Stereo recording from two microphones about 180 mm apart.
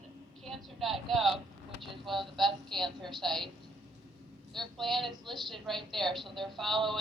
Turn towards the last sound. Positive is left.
turn(degrees=0)  # may be behind; listen again after turning